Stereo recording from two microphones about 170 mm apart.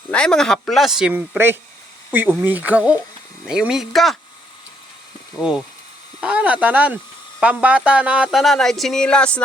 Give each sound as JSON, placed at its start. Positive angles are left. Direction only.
{"t": 0.1, "sound": "speech", "side_deg": 5}
{"t": 5.4, "sound": "speech", "side_deg": -5}